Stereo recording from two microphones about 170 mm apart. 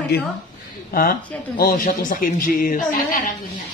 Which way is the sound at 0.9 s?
60° left (ahead or behind).